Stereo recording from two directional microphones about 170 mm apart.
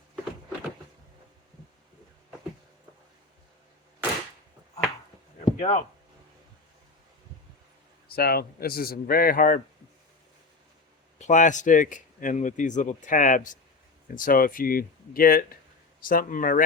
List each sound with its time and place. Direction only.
5.5 s speech: 40° left (ahead or behind)
8.0 s speech: 65° left (ahead or behind)
11.2 s speech: 45° left (ahead or behind)